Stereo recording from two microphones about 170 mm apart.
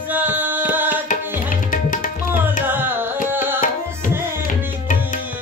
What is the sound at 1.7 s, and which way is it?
Tabla, 50° left (ahead or behind).